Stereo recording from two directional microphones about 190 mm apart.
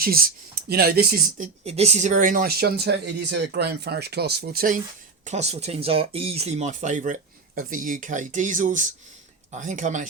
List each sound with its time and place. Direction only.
0.0 s speech: 50° right (ahead or behind)
1.6 s speech: 35° right (ahead or behind); by 4.8 s 50° right (ahead or behind)
5.2 s speech: 35° right (ahead or behind)